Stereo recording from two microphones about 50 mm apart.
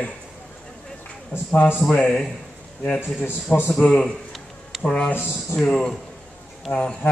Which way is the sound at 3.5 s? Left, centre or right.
Left.